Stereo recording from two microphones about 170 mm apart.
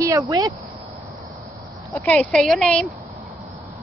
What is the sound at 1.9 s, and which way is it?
Speech, 10° left (ahead or behind).